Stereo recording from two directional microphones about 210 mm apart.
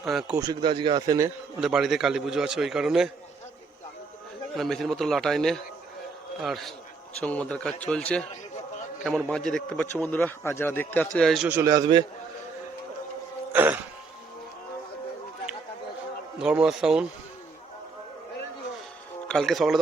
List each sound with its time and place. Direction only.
0.0 s speech: centre (ahead or behind)
0.3 s speech: 20° right (ahead or behind)
1.6 s speech: centre (ahead or behind)
4.5 s speech: centre (ahead or behind)
9.3 s speech: 5° left (ahead or behind)
11.7 s speech: 20° right (ahead or behind)
13.5 s throat clearing: 10° right (ahead or behind)
16.4 s speech: 5° right (ahead or behind)
19.3 s speech: centre (ahead or behind)